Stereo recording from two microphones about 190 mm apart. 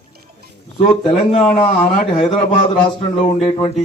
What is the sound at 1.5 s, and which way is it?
A man's voice, 40° left (ahead or behind).